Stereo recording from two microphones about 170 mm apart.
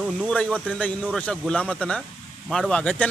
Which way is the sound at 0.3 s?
5° left (ahead or behind).